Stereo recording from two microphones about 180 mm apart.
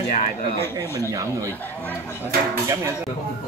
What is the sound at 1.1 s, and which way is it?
Speech, 15° right (ahead or behind).